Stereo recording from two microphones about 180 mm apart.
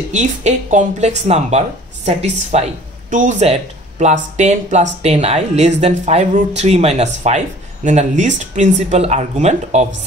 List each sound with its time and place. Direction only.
0.1 s speech: 40° right (ahead or behind)